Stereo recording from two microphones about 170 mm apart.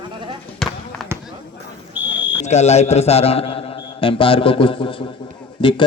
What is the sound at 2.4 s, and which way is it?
A man's voice, 40° left (ahead or behind).